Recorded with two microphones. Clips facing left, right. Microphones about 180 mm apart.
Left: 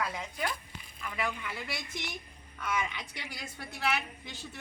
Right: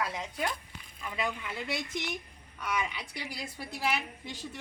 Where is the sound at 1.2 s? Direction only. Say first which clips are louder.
Right 1 dB; 20° right (ahead or behind).